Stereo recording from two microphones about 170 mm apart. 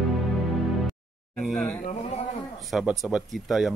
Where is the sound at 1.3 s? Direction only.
Centre (ahead or behind).